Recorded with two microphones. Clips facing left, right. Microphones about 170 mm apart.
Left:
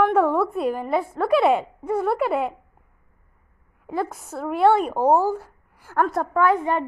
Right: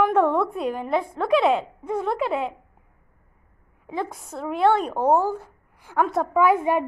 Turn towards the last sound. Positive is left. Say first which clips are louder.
# right 1 dB
turn(degrees=-10)  # may be behind; listen again after turning